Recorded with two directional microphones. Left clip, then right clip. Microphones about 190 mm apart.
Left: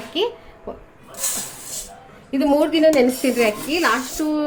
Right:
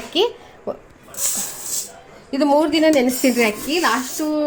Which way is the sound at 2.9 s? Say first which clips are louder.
Even; 50° right (ahead or behind).